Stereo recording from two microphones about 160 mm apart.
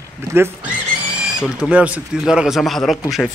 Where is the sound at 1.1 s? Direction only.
5° right (ahead or behind).